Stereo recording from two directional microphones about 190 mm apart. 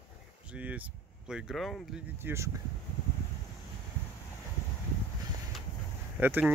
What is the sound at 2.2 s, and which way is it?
Speech, 15° right (ahead or behind).